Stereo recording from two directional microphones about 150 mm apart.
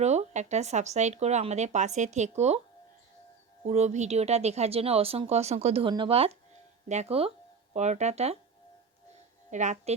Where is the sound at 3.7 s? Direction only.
50° right (ahead or behind).